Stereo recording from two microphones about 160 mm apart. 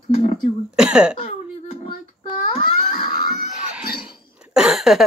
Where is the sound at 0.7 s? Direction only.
5° right (ahead or behind).